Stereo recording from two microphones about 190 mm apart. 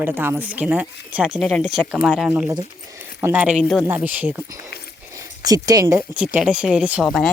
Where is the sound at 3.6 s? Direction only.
Centre (ahead or behind).